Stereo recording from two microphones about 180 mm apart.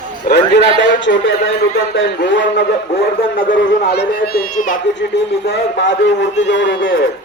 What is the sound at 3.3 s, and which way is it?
A man's voice, 60° left (ahead or behind).